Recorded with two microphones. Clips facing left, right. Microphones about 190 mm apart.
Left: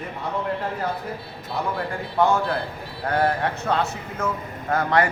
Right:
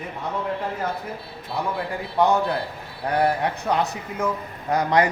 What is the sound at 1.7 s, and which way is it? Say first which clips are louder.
A man's voice: even; 20° right (ahead or behind).